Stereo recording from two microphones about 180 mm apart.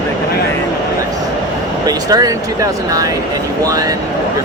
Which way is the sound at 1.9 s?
20° right (ahead or behind).